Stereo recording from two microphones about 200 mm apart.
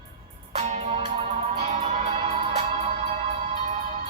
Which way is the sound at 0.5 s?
35° right (ahead or behind).